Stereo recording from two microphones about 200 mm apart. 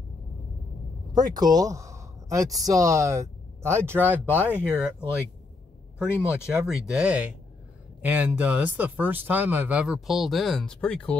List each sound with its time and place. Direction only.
1.1 s speech: 20° right (ahead or behind)
6.2 s speech: 5° right (ahead or behind)